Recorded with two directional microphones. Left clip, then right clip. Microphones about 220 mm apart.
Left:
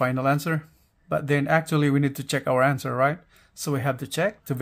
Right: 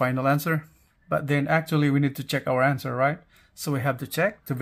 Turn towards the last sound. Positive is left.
turn(degrees=5)  # may be behind; listen again after turning